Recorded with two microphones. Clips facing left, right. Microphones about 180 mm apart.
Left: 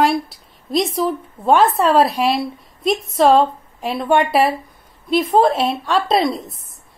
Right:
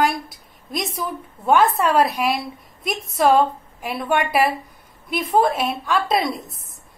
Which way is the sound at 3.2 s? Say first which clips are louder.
Left 3 dB; 25° left (ahead or behind).